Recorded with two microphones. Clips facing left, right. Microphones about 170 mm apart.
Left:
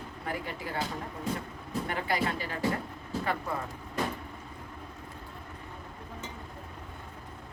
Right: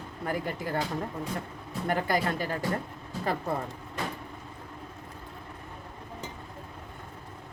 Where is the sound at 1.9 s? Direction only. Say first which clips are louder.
Right 4 dB; 45° right (ahead or behind).